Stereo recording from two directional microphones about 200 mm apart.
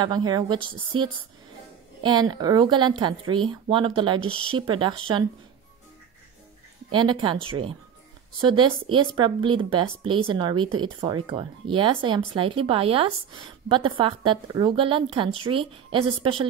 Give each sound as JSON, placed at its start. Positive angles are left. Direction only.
{"t": 0.0, "sound": "speech", "side_deg": -20}
{"t": 6.9, "sound": "speech", "side_deg": -25}